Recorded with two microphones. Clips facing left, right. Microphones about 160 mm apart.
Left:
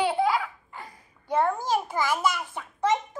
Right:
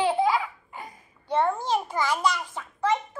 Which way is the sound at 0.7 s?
20° right (ahead or behind).